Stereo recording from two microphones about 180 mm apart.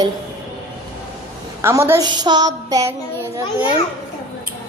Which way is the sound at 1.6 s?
15° right (ahead or behind).